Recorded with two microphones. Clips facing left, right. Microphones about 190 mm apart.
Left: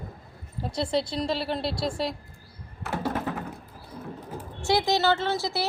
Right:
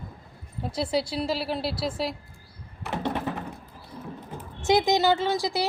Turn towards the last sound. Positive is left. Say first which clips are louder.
# right 2 dB
turn(degrees=-15)  # may be behind; listen again after turning